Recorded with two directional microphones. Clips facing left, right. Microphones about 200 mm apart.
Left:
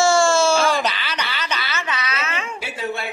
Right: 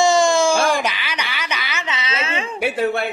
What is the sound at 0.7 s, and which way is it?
Wail, 15° right (ahead or behind).